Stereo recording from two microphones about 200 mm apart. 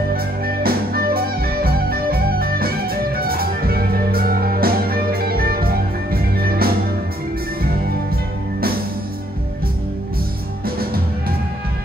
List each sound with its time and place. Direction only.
0.1 s music: 50° right (ahead or behind)
10.8 s music: 50° right (ahead or behind)